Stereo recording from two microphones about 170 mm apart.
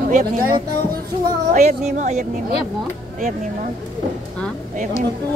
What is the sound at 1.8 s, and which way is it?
Speech, 40° right (ahead or behind).